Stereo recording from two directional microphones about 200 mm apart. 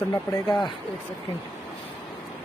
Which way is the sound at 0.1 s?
15° left (ahead or behind).